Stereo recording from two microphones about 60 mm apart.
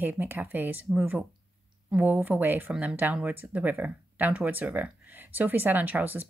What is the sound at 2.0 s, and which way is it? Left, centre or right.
Speech, right.